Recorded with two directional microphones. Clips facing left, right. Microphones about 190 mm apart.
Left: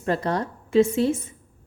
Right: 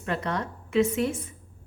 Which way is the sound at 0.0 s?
35° left (ahead or behind).